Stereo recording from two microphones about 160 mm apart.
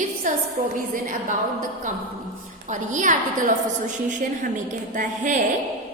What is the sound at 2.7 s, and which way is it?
Speech, 50° right (ahead or behind).